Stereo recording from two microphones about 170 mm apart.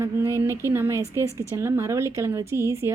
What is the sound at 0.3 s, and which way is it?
Speech, 15° right (ahead or behind).